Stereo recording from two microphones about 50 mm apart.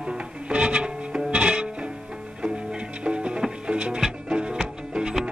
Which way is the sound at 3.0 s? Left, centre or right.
Centre.